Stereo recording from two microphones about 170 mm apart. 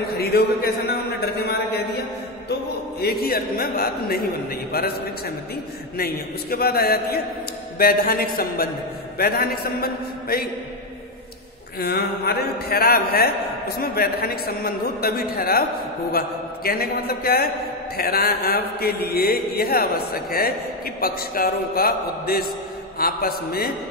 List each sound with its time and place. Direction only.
0.2 s a man's voice: 70° left (ahead or behind)
3.0 s mantra: 65° left (ahead or behind)
11.8 s mantra: 70° left (ahead or behind)